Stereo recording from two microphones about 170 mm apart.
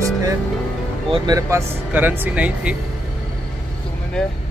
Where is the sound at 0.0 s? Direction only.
20° right (ahead or behind).